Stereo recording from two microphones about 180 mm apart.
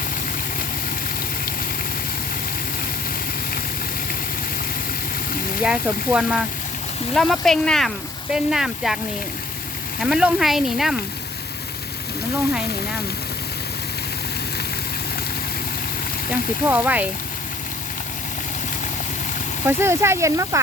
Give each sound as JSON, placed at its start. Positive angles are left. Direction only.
{"t": 5.6, "sound": "speech", "side_deg": -5}
{"t": 10.0, "sound": "speech", "side_deg": -5}
{"t": 16.3, "sound": "speech", "side_deg": -10}
{"t": 19.6, "sound": "speech", "side_deg": -15}